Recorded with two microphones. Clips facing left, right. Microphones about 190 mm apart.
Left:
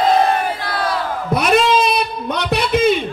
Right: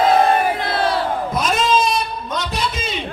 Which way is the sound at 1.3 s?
65° left (ahead or behind).